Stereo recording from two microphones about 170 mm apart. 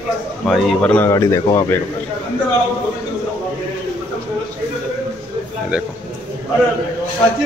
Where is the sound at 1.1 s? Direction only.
20° left (ahead or behind).